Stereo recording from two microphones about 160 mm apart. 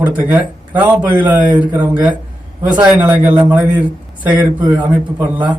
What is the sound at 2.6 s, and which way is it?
Speech, 5° right (ahead or behind).